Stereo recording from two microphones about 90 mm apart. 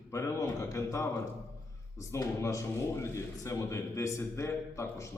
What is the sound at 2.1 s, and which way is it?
A man's voice, 35° left (ahead or behind).